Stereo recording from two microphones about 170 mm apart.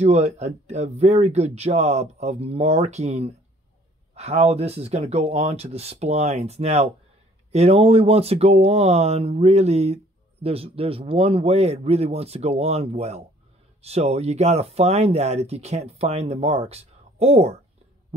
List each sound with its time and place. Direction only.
0.0 s speech: 40° right (ahead or behind)